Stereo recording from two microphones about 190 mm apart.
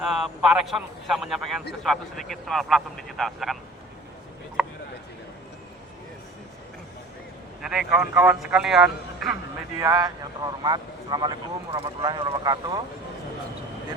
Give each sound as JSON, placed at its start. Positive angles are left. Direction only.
{"t": 0.0, "sound": "speech", "side_deg": 0}
{"t": 4.6, "sound": "a sound", "side_deg": 0}
{"t": 7.6, "sound": "speech", "side_deg": -5}
{"t": 9.7, "sound": "speech", "side_deg": -15}